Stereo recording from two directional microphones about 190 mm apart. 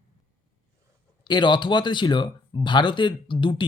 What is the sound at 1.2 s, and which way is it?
Speech, 25° left (ahead or behind).